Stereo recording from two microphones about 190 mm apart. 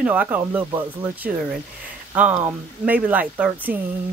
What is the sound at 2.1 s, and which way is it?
Speech, 10° right (ahead or behind).